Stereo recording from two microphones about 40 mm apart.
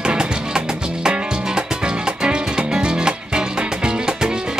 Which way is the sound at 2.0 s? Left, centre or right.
Right.